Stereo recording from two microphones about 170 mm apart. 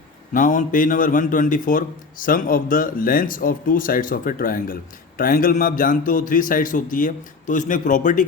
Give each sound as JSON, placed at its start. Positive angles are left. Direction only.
{"t": 0.3, "sound": "a man's voice", "side_deg": 50}